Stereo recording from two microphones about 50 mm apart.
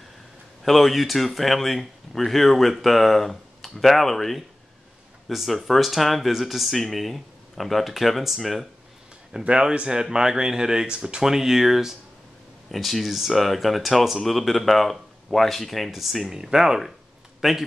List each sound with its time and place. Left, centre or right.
0.7 s speech: centre
9.4 s speech: centre